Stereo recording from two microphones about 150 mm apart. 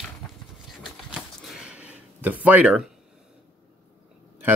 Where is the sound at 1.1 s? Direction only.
5° right (ahead or behind).